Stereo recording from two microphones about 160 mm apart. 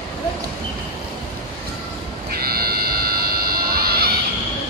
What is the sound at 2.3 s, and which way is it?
Music, 70° right (ahead or behind).